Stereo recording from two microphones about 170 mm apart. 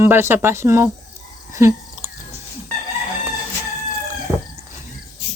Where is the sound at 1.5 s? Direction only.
15° right (ahead or behind).